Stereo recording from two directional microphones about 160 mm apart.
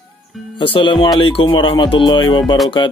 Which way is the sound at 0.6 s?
35° left (ahead or behind).